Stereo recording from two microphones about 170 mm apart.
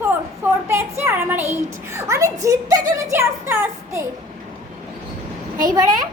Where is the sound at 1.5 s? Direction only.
15° right (ahead or behind).